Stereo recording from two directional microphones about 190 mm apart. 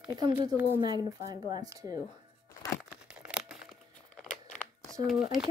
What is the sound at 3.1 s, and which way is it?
Crumpling, 5° right (ahead or behind).